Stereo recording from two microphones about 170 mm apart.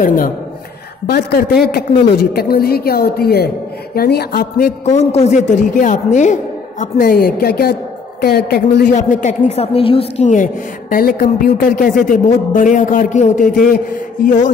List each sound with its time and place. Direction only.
0.0 s a woman's voice: 55° left (ahead or behind)
1.0 s a man's voice: 70° left (ahead or behind)
4.8 s speech: 40° left (ahead or behind)
10.2 s speech: 50° left (ahead or behind)
14.2 s speech: 45° left (ahead or behind)